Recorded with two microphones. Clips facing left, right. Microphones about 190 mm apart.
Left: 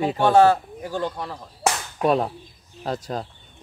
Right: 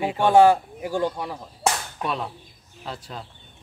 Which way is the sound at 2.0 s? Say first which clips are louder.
Left 8 dB; 45° left (ahead or behind).